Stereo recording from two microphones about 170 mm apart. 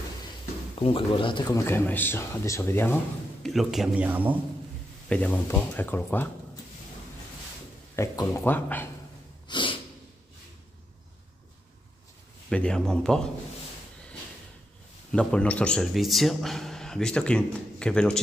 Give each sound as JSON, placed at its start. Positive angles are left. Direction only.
{"t": 0.7, "sound": "speech", "side_deg": 30}
{"t": 3.4, "sound": "a man's voice", "side_deg": 0}
{"t": 5.0, "sound": "speech", "side_deg": 10}
{"t": 7.9, "sound": "speech", "side_deg": 15}
{"t": 9.5, "sound": "snort", "side_deg": 30}
{"t": 12.4, "sound": "a man's voice", "side_deg": 5}
{"t": 15.1, "sound": "a man's voice", "side_deg": 5}